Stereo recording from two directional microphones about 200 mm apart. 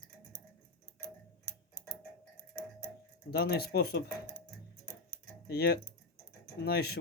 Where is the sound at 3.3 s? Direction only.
50° left (ahead or behind).